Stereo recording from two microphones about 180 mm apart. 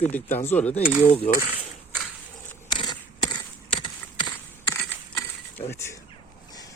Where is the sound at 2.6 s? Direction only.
25° left (ahead or behind).